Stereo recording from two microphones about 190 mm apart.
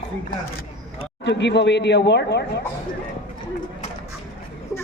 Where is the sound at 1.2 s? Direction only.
65° left (ahead or behind).